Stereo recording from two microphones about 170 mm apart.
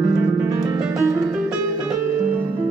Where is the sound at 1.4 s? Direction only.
5° right (ahead or behind).